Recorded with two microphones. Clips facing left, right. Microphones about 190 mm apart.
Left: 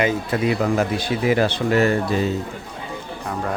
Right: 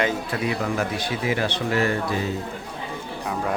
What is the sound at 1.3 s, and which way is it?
Speech, 30° left (ahead or behind).